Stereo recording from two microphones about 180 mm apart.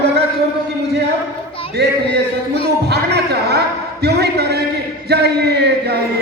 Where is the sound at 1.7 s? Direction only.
70° right (ahead or behind).